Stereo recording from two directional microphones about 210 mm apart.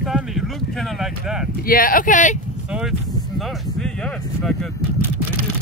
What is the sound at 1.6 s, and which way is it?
Speech, 40° left (ahead or behind).